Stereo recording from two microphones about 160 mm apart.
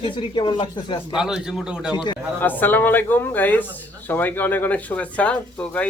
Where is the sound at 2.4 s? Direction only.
10° left (ahead or behind).